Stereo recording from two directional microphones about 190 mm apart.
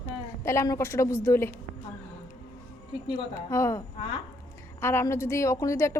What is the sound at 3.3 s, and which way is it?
Speech, 15° left (ahead or behind).